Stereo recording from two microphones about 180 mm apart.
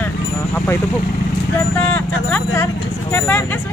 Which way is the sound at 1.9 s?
10° left (ahead or behind).